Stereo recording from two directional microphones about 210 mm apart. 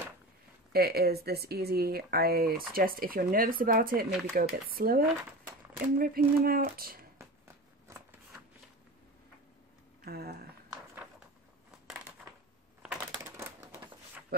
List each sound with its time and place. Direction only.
0.7 s speech: 45° right (ahead or behind)
7.9 s shuffling cards: 10° right (ahead or behind)
10.0 s speech: 45° right (ahead or behind)
12.8 s a sound: 5° right (ahead or behind)